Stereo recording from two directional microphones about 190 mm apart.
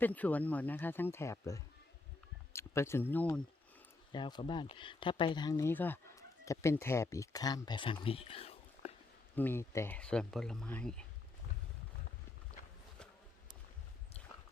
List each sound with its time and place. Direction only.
0.0 s speech: 10° left (ahead or behind)
4.1 s speech: 25° left (ahead or behind)
9.3 s speech: 10° left (ahead or behind)